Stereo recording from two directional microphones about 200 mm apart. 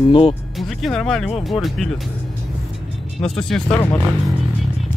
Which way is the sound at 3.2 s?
5° left (ahead or behind).